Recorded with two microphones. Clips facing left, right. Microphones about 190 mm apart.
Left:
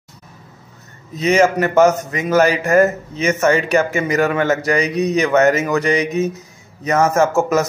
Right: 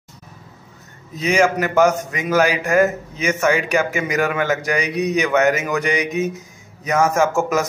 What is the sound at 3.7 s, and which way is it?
Speech, 10° right (ahead or behind).